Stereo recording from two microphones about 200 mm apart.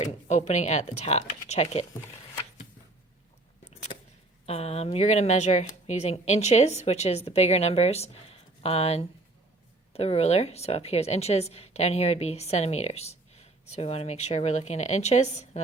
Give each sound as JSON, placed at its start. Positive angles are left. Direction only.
{"t": 0.0, "sound": "a woman's voice", "side_deg": 35}
{"t": 3.9, "sound": "a sound", "side_deg": 40}
{"t": 4.4, "sound": "a woman's voice", "side_deg": 30}